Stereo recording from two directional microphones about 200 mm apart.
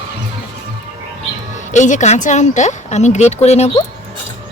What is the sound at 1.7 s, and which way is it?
A woman's voice, 35° left (ahead or behind).